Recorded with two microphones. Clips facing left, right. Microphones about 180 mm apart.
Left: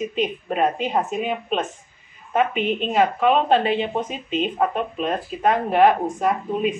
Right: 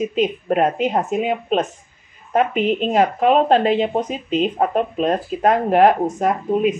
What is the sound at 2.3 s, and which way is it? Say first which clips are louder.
Speech: right 3 dB; 40° right (ahead or behind).